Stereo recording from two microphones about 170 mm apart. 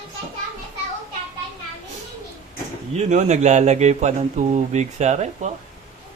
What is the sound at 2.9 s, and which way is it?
Speech, 45° right (ahead or behind).